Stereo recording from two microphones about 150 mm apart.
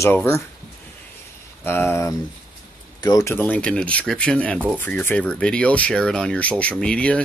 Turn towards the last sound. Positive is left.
turn(degrees=10)  # may be behind; listen again after turning